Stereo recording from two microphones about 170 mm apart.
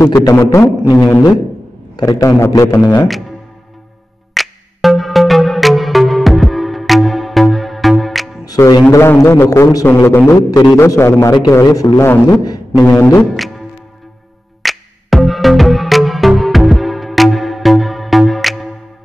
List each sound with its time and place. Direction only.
0.0 s a man's voice: 20° left (ahead or behind)
4.3 s music: centre (ahead or behind)
8.5 s a man's voice: 20° left (ahead or behind)
14.6 s music: centre (ahead or behind)